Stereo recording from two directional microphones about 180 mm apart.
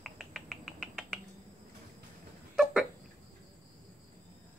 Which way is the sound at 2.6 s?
Centre (ahead or behind).